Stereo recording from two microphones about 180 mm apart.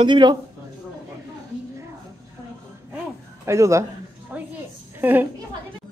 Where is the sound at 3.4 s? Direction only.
15° right (ahead or behind).